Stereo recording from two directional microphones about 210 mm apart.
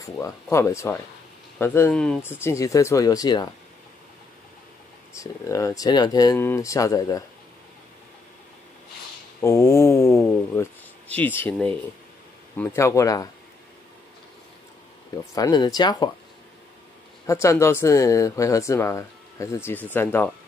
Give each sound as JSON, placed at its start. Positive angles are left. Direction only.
{"t": 0.0, "sound": "speech", "side_deg": 15}
{"t": 5.1, "sound": "speech", "side_deg": 15}
{"t": 9.4, "sound": "speech", "side_deg": 15}
{"t": 15.3, "sound": "speech", "side_deg": 20}
{"t": 17.3, "sound": "speech", "side_deg": 15}